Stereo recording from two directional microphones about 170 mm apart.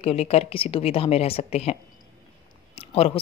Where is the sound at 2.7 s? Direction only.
35° left (ahead or behind).